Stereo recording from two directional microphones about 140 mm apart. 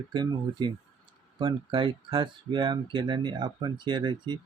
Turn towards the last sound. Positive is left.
turn(degrees=-30)  # may be behind; listen again after turning